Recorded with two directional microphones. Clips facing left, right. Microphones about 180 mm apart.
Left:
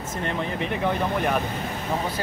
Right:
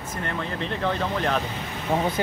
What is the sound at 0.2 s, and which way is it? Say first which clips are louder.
Speech: left 2 dB; 20° left (ahead or behind).